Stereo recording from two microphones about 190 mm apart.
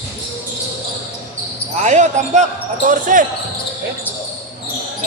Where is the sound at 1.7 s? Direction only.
40° right (ahead or behind).